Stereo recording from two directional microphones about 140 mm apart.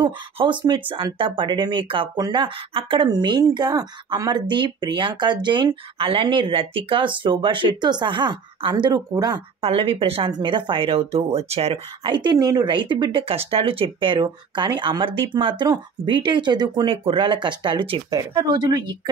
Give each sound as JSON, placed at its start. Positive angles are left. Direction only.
{"t": 0.0, "sound": "speech", "side_deg": -35}
{"t": 9.6, "sound": "speech", "side_deg": -45}